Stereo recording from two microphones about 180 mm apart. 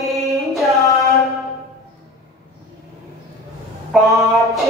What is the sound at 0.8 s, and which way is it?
Music, 15° left (ahead or behind).